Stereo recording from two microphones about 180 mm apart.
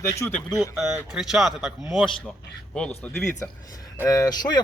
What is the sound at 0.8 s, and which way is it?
Speech, 5° right (ahead or behind).